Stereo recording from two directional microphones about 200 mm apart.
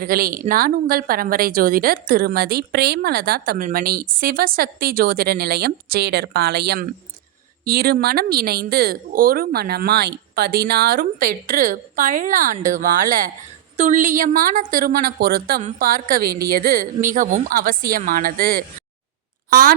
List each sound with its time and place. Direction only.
0.0 s a woman's voice: 45° right (ahead or behind)